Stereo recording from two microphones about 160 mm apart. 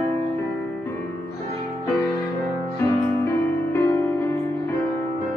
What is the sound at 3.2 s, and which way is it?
Music, 15° left (ahead or behind).